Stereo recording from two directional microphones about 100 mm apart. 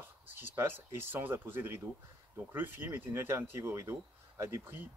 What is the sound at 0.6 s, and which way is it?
Speech, 20° right (ahead or behind).